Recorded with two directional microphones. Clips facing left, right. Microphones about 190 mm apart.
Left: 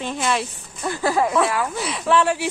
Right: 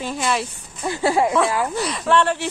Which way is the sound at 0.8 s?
20° right (ahead or behind).